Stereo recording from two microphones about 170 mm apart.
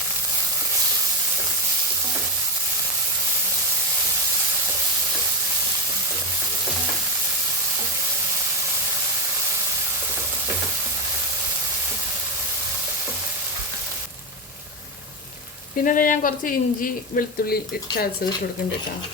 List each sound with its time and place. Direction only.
15.8 s speech: 55° left (ahead or behind)